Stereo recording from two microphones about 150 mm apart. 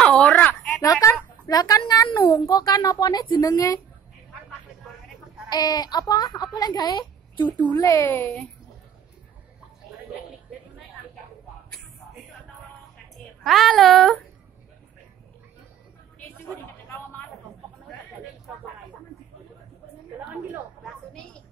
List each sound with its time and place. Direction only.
0.0 s a sound: 5° left (ahead or behind)
1.0 s speech: 25° left (ahead or behind)
5.5 s speech: 25° left (ahead or behind)
7.3 s speech: 10° left (ahead or behind)
13.4 s speech: centre (ahead or behind)
20.8 s a sound: 5° left (ahead or behind)